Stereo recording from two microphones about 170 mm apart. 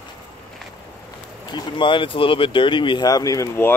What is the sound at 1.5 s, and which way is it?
Speech, 25° left (ahead or behind).